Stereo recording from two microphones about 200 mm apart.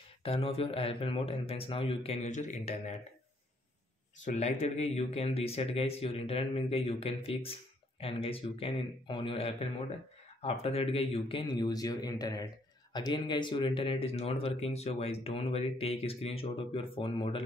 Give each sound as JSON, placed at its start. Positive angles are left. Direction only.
{"t": 0.2, "sound": "speech", "side_deg": 30}
{"t": 4.2, "sound": "speech", "side_deg": 35}